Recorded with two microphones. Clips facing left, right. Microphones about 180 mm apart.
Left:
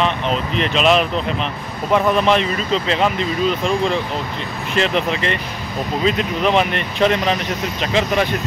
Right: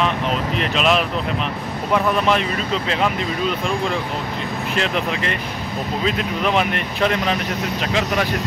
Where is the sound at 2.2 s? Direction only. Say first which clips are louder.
Left 3 dB; 5° right (ahead or behind).